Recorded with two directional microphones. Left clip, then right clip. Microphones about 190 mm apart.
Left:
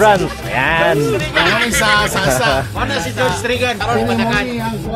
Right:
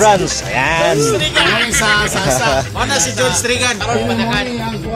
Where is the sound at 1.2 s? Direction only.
60° right (ahead or behind).